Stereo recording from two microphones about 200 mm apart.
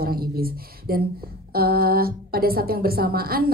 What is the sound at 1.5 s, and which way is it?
Speech, 50° right (ahead or behind).